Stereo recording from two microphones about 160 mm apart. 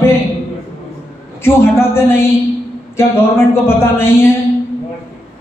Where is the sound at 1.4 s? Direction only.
15° left (ahead or behind).